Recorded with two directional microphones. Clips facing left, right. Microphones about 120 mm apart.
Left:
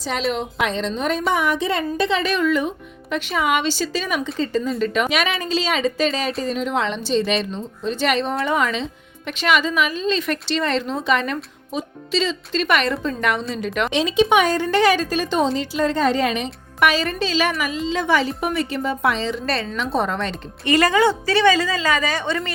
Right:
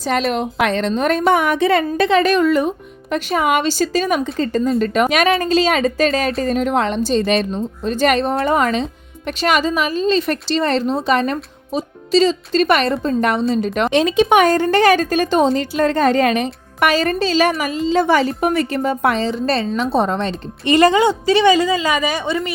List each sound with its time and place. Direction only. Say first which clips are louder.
0.0 s a woman's voice: right 5 dB; 55° right (ahead or behind); by 13.9 s 35° right (ahead or behind)
13.9 s a woman's voice: right 3 dB; 50° right (ahead or behind)
19.3 s a woman's voice: right 5 dB; 30° right (ahead or behind); by 22.5 s 10° right (ahead or behind)